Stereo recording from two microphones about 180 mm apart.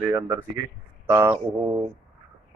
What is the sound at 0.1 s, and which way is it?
Speech, 15° right (ahead or behind).